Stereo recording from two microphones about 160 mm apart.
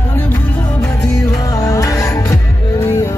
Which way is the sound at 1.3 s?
20° left (ahead or behind).